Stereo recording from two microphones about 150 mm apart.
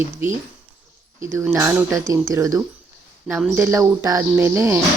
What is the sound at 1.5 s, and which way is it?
A woman's voice, 15° right (ahead or behind).